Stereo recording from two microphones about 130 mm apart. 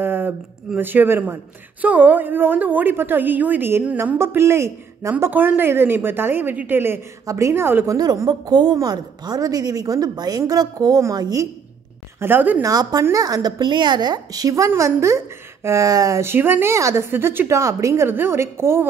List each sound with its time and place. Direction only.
0.0 s a sound: 15° right (ahead or behind)
0.7 s a woman's voice: 15° right (ahead or behind)
12.2 s speech: 15° right (ahead or behind)
12.6 s a woman's voice: 25° right (ahead or behind)